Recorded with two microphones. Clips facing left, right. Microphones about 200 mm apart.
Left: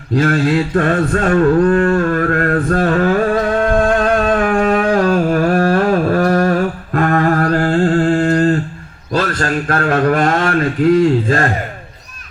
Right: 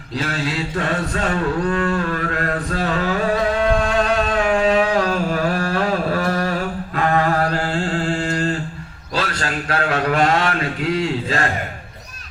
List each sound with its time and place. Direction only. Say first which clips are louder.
0.1 s mantra: left 10 dB; 50° left (ahead or behind)
9.1 s speech: left 7 dB; 50° left (ahead or behind)